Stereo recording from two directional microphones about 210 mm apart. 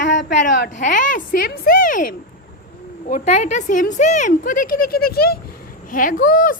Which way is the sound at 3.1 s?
35° left (ahead or behind).